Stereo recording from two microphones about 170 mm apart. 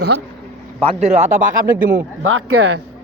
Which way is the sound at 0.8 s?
40° right (ahead or behind).